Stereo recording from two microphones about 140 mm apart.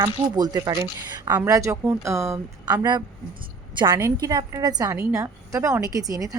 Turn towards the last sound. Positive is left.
turn(degrees=-25)  # may be behind; listen again after turning